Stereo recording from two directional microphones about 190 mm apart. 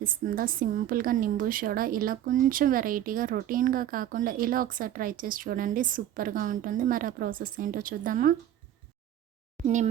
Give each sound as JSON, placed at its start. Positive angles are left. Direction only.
{"t": 0.0, "sound": "a woman's voice", "side_deg": -45}
{"t": 9.6, "sound": "a child's voice", "side_deg": -35}